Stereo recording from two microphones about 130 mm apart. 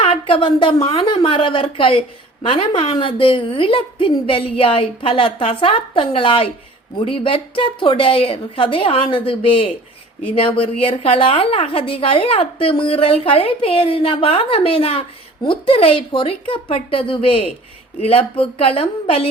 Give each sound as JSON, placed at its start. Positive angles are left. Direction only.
{"t": 0.0, "sound": "a woman's voice", "side_deg": 45}